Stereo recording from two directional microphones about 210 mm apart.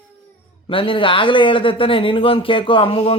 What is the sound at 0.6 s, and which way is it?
A man's voice, 25° left (ahead or behind).